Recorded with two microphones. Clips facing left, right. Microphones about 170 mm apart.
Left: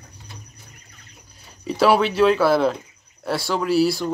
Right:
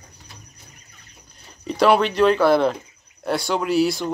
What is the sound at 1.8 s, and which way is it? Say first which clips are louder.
Speech: even; 5° left (ahead or behind).